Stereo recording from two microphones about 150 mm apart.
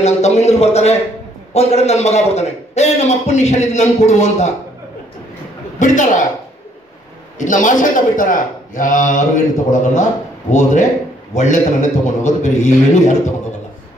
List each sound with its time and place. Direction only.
0.0 s a man's voice: 45° left (ahead or behind)
5.8 s a man's voice: 55° left (ahead or behind)
7.3 s a man's voice: 60° left (ahead or behind)